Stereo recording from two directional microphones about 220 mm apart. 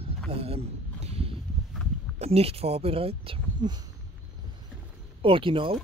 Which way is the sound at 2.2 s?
30° right (ahead or behind).